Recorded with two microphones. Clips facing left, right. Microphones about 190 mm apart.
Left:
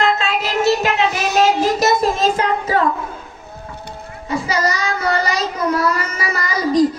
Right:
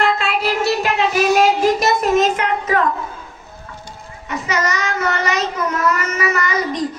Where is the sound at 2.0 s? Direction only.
30° left (ahead or behind).